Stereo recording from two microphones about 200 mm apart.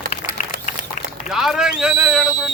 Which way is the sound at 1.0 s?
40° left (ahead or behind).